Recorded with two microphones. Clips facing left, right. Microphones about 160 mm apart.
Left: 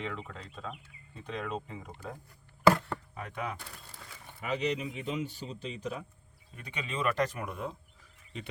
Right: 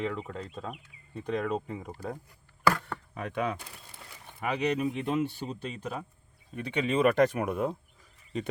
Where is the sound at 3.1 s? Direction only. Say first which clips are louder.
Right 9 dB; 70° right (ahead or behind).